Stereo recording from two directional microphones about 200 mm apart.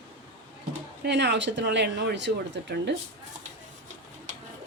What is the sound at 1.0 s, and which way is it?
A woman's voice, 60° right (ahead or behind).